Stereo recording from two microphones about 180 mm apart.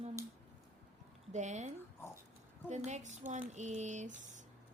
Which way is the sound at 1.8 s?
15° left (ahead or behind).